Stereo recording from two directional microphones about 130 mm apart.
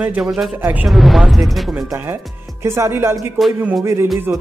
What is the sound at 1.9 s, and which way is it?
Speech, 20° right (ahead or behind).